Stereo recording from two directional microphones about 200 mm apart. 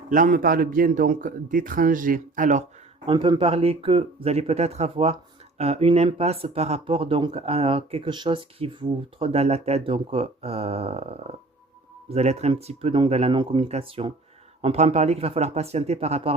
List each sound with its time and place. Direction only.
0.1 s a man's voice: 40° right (ahead or behind)
3.1 s speech: 20° right (ahead or behind)